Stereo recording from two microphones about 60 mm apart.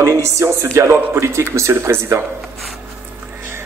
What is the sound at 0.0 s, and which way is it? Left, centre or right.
Speech, right.